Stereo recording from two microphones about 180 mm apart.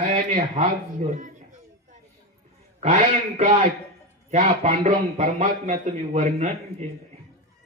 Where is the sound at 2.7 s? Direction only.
40° right (ahead or behind).